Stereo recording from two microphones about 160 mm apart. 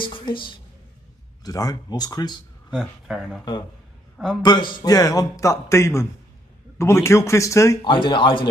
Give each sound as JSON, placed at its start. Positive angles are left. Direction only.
{"t": 0.0, "sound": "a woman's voice", "side_deg": 30}
{"t": 2.7, "sound": "speech", "side_deg": 0}
{"t": 4.4, "sound": "a man's voice", "side_deg": 30}
{"t": 7.9, "sound": "a man's voice", "side_deg": 30}